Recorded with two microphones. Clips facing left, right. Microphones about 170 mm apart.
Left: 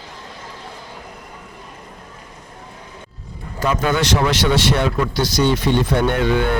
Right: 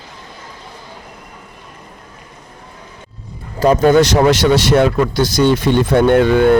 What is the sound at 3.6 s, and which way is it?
Speech, 40° right (ahead or behind).